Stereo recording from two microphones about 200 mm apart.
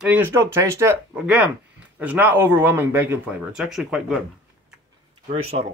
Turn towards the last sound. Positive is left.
turn(degrees=-30)  # may be behind; listen again after turning